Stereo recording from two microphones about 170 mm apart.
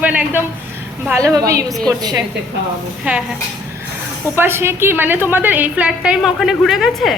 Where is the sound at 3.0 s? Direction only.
5° right (ahead or behind).